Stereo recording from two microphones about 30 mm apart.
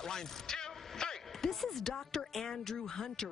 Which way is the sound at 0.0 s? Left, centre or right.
Centre.